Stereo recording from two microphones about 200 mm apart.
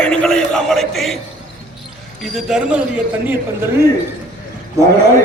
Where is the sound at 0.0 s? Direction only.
5° left (ahead or behind).